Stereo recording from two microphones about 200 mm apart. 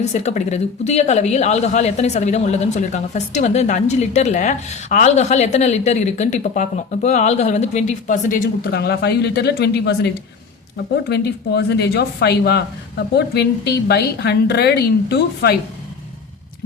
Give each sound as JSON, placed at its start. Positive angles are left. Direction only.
{"t": 0.0, "sound": "a woman's voice", "side_deg": 35}
{"t": 11.1, "sound": "speech", "side_deg": 55}